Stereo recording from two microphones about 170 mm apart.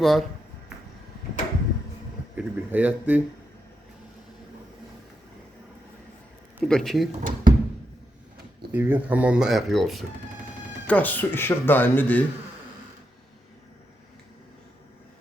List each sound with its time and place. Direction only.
0.0 s speech: centre (ahead or behind)
2.3 s speech: 10° right (ahead or behind)
6.6 s speech: 5° left (ahead or behind)
7.2 s speech: 55° right (ahead or behind)
8.7 s speech: 10° right (ahead or behind); by 12.2 s 10° left (ahead or behind)